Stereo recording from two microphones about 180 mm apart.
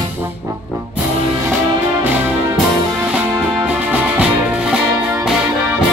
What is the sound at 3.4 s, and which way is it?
Music, 5° right (ahead or behind).